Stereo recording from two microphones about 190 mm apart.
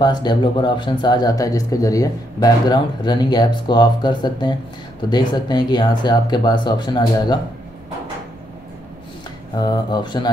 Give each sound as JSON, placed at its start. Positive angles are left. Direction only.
{"t": 0.0, "sound": "speech", "side_deg": 20}
{"t": 9.6, "sound": "speech", "side_deg": 20}